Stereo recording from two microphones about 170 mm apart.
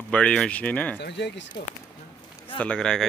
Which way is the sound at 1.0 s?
90° left.